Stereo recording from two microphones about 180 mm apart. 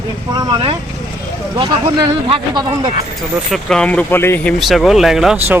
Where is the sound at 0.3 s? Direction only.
25° right (ahead or behind).